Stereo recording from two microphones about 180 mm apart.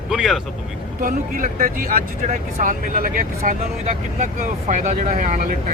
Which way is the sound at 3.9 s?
40° right (ahead or behind).